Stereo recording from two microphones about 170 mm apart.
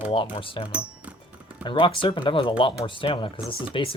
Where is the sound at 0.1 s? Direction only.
30° left (ahead or behind).